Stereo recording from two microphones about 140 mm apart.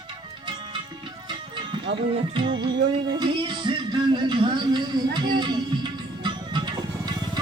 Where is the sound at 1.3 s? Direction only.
35° right (ahead or behind).